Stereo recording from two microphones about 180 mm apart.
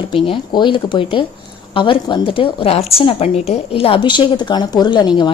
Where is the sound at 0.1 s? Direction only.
30° left (ahead or behind).